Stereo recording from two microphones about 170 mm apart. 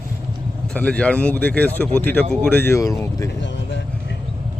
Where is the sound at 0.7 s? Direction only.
5° left (ahead or behind).